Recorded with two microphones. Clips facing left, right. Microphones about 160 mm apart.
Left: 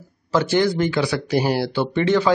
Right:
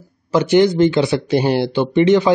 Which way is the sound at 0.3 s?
20° right (ahead or behind).